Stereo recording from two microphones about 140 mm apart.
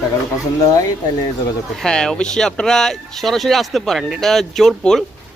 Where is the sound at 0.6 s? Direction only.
25° left (ahead or behind).